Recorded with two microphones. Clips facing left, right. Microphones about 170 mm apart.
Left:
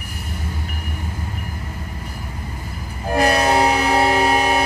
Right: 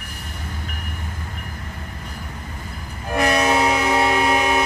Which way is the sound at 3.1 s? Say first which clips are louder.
Left 2 dB; 35° left (ahead or behind).